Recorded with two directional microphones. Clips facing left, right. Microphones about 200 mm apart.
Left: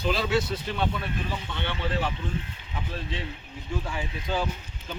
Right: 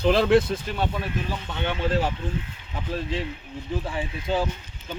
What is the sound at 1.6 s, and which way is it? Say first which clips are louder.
Speech: right 6 dB; 45° right (ahead or behind).